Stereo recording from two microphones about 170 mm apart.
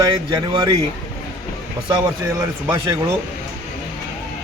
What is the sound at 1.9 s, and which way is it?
A man's voice, 20° right (ahead or behind).